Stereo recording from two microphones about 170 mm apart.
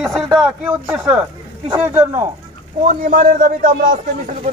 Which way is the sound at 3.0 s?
55° right (ahead or behind).